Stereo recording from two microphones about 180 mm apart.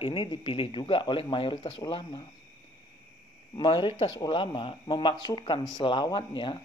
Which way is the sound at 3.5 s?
25° left (ahead or behind).